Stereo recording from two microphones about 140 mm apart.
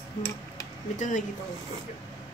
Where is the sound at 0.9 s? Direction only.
65° left (ahead or behind).